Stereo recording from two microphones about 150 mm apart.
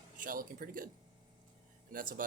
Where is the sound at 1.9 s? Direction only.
70° right (ahead or behind).